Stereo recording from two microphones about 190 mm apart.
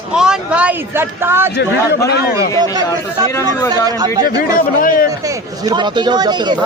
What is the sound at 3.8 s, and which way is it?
Speech, 20° right (ahead or behind).